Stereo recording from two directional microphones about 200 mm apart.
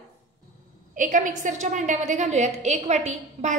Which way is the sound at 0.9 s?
40° right (ahead or behind).